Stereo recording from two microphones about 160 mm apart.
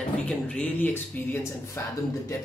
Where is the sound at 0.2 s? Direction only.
10° left (ahead or behind).